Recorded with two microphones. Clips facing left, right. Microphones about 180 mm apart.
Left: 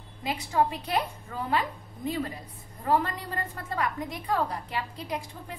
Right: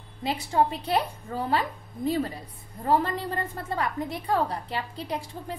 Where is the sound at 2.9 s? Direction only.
30° right (ahead or behind).